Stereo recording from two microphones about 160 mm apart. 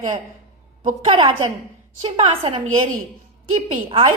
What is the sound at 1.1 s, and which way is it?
A woman's voice, 30° right (ahead or behind).